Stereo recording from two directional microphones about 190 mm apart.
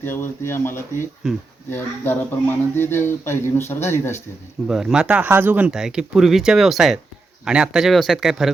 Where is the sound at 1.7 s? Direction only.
10° left (ahead or behind).